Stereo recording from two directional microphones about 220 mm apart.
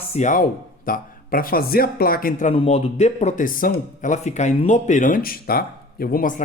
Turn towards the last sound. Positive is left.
turn(degrees=40)  # may be behind; listen again after turning